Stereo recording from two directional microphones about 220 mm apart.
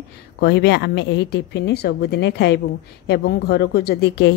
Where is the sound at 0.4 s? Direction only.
50° left (ahead or behind).